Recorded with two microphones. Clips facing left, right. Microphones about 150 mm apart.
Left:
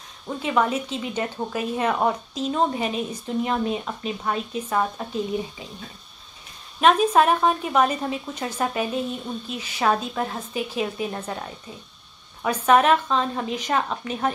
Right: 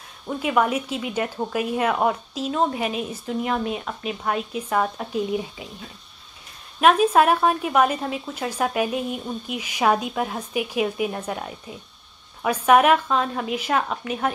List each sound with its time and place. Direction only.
0.4 s speech: 10° right (ahead or behind)
6.8 s speech: 5° right (ahead or behind)
12.6 s speech: 10° right (ahead or behind)